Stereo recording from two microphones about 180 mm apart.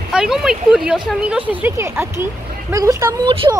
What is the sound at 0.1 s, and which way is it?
Speech, 5° right (ahead or behind).